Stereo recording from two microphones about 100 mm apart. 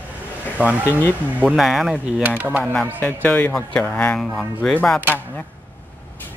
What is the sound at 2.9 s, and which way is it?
Speech, 15° left (ahead or behind).